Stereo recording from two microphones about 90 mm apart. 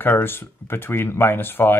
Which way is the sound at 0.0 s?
25° left (ahead or behind).